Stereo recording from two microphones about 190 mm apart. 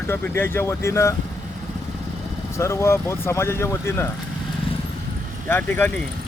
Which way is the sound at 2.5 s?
15° left (ahead or behind).